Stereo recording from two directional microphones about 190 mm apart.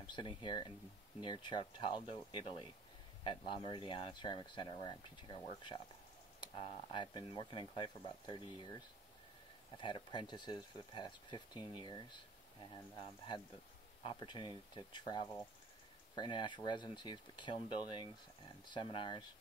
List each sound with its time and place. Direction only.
0.1 s speech: 25° left (ahead or behind)